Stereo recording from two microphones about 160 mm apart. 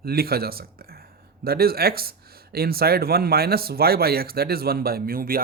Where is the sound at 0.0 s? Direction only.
75° right (ahead or behind).